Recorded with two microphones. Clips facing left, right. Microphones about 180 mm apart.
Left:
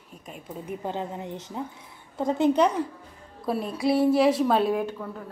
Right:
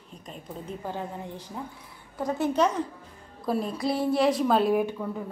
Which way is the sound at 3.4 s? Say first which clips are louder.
Left 2 dB; 5° left (ahead or behind).